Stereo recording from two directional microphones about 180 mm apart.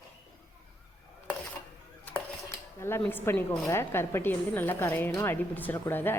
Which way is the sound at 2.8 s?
10° left (ahead or behind).